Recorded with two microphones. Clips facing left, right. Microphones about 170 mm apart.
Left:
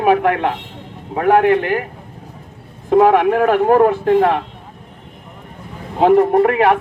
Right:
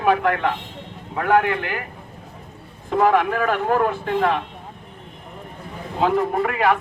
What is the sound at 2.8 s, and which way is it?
Speech, 55° left (ahead or behind).